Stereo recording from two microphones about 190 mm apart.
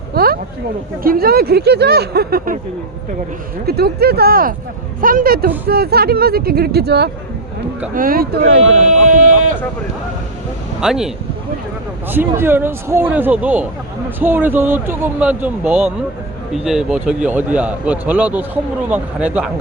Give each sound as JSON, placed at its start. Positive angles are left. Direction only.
{"t": 0.1, "sound": "a sound", "side_deg": -50}
{"t": 1.0, "sound": "speech", "side_deg": -55}
{"t": 3.7, "sound": "speech", "side_deg": -55}
{"t": 7.9, "sound": "speech", "side_deg": -50}
{"t": 8.7, "sound": "speech", "side_deg": -40}
{"t": 10.8, "sound": "a man's voice", "side_deg": -5}